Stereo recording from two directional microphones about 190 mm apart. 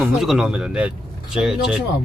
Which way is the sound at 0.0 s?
Centre (ahead or behind).